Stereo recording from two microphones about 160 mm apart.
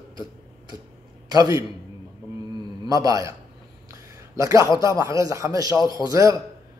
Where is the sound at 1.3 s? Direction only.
20° right (ahead or behind).